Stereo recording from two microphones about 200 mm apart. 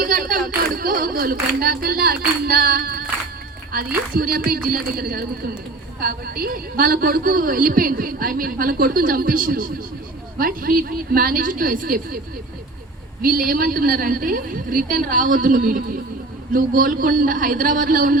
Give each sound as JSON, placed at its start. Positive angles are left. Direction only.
{"t": 0.0, "sound": "a sound", "side_deg": -45}
{"t": 0.8, "sound": "a woman's voice", "side_deg": -45}
{"t": 13.2, "sound": "a woman's voice", "side_deg": -45}